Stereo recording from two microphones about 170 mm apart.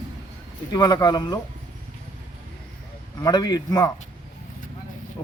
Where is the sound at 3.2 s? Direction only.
25° left (ahead or behind).